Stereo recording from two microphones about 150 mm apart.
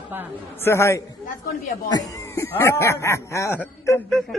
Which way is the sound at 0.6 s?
20° left (ahead or behind).